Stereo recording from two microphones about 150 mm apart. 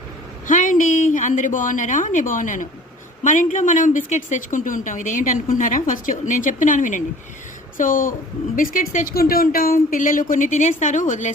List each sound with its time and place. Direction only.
0.4 s a woman's voice: 60° left (ahead or behind)
9.1 s a woman's voice: 75° left (ahead or behind); by 11.3 s 55° left (ahead or behind)